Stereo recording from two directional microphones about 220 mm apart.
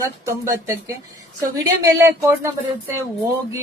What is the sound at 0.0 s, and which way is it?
Speech, 15° right (ahead or behind).